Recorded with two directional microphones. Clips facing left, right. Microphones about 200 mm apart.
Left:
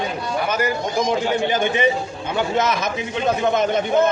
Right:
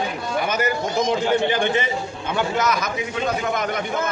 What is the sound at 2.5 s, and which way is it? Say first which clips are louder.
Speech: left 3 dB; 25° left (ahead or behind).